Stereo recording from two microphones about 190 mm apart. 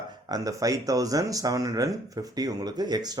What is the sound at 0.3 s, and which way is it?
Speech, 20° right (ahead or behind).